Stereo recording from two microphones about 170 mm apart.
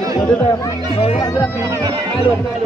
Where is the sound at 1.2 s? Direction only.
15° left (ahead or behind).